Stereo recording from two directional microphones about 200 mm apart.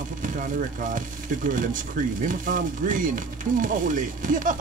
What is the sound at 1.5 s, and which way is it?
Speech, 40° right (ahead or behind).